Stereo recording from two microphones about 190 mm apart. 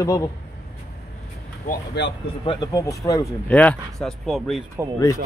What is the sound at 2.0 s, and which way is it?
Speech, 65° left (ahead or behind).